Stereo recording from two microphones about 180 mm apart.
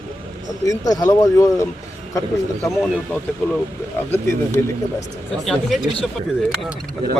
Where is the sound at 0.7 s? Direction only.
20° left (ahead or behind).